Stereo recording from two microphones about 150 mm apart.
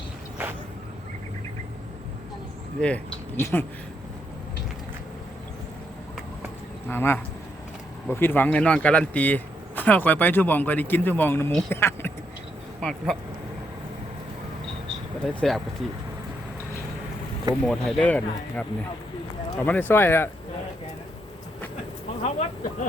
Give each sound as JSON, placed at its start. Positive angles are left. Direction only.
{"t": 2.8, "sound": "speech", "side_deg": 10}
{"t": 6.8, "sound": "speech", "side_deg": 15}
{"t": 12.8, "sound": "speech", "side_deg": 5}
{"t": 15.4, "sound": "speech", "side_deg": 0}
{"t": 17.5, "sound": "speech", "side_deg": 5}
{"t": 22.2, "sound": "speech", "side_deg": 50}